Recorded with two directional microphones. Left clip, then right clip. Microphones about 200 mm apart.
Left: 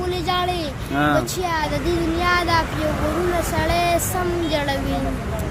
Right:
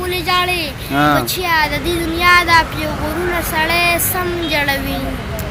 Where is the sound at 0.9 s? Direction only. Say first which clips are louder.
Right 5 dB; 25° right (ahead or behind).